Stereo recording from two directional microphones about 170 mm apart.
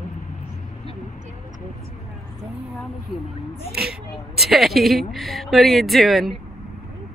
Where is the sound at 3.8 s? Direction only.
Centre (ahead or behind).